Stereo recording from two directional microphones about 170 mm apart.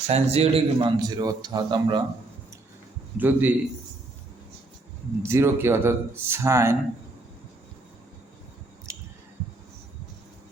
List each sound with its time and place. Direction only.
0.1 s a man's voice: 40° right (ahead or behind)
3.2 s speech: 10° right (ahead or behind)
5.2 s speech: 15° right (ahead or behind)
8.9 s squish: 15° right (ahead or behind)